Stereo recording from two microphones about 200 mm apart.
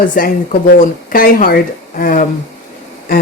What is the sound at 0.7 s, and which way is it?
Speech, 45° left (ahead or behind).